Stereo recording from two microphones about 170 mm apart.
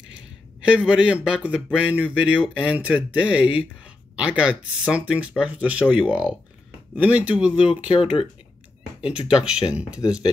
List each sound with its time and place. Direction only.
0.6 s speech: 5° right (ahead or behind)
8.0 s speech: 30° left (ahead or behind)
9.3 s speech: 5° right (ahead or behind)